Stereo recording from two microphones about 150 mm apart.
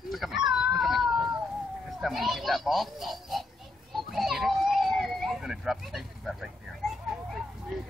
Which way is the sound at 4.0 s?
Centre (ahead or behind).